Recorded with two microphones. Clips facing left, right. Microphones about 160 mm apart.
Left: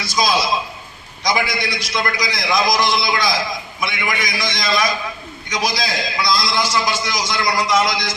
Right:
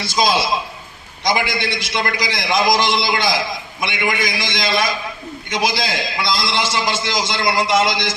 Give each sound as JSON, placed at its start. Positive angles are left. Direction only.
{"t": 0.1, "sound": "a man's voice", "side_deg": -25}